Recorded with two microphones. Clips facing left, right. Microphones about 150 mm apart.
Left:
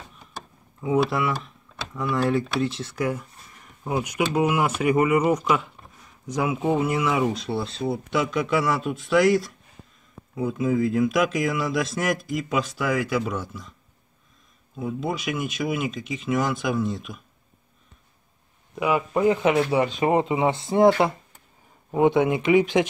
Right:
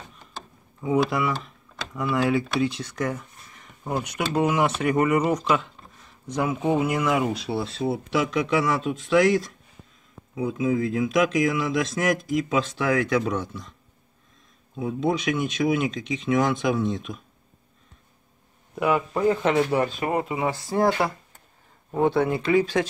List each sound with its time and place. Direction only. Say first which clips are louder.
0.7 s speech: even; centre (ahead or behind)
15.0 s speech: right 5 dB; 5° left (ahead or behind)
18.8 s speech: left 1 dB; 5° left (ahead or behind)
19.9 s speech: left 5 dB; 20° left (ahead or behind)